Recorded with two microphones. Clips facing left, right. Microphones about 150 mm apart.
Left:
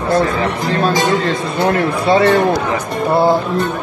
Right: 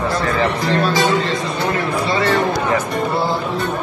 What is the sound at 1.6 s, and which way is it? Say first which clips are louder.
Speech: left 7 dB; 60° left (ahead or behind).